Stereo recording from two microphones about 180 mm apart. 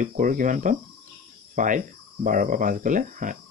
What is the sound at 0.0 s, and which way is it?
Speech, 50° right (ahead or behind).